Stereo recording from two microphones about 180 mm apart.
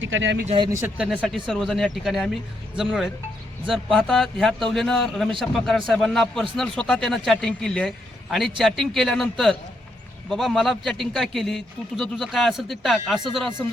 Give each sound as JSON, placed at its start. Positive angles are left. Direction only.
{"t": 0.0, "sound": "speech", "side_deg": -90}
{"t": 0.4, "sound": "speech", "side_deg": -30}
{"t": 0.7, "sound": "speech", "side_deg": -15}
{"t": 1.0, "sound": "a man's voice", "side_deg": 0}